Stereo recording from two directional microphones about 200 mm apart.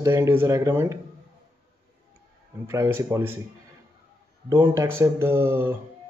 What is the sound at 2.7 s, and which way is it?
Speech, 15° right (ahead or behind).